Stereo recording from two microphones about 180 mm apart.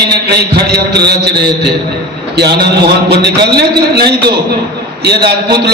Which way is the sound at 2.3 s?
65° right (ahead or behind).